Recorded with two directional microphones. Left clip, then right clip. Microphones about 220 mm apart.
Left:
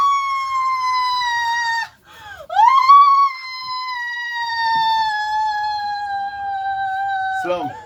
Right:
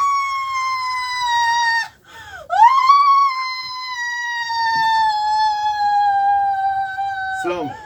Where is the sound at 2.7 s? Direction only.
Centre (ahead or behind).